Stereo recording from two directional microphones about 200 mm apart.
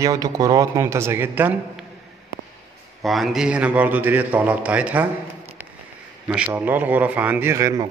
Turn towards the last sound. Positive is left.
turn(degrees=-15)  # may be behind; listen again after turning